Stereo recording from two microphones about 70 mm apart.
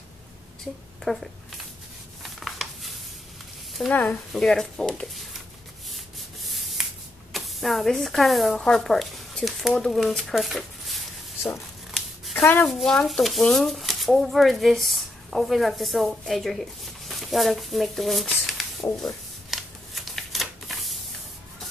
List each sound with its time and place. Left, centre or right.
1.0 s speech: centre
2.2 s a sound: centre
3.9 s speech: left
4.3 s speech: centre
5.9 s rub: centre
7.3 s speech: centre
11.9 s a sound: centre
12.5 s speech: centre
18.5 s shuffling cards: centre